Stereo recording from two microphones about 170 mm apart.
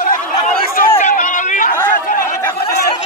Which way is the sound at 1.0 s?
50° left (ahead or behind).